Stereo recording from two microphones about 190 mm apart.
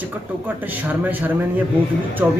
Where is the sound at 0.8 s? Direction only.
10° right (ahead or behind).